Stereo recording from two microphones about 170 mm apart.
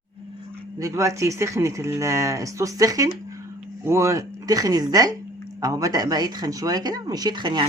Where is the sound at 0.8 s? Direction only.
20° right (ahead or behind).